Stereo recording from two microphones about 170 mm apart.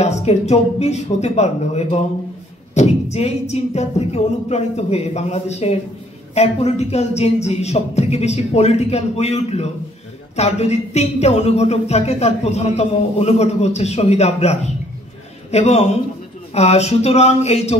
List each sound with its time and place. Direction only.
0.0 s speech: 40° left (ahead or behind)